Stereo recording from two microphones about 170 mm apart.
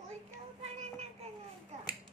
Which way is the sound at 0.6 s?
40° right (ahead or behind).